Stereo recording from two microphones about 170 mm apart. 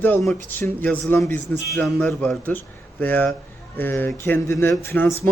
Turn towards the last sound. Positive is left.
turn(degrees=15)  # may be behind; listen again after turning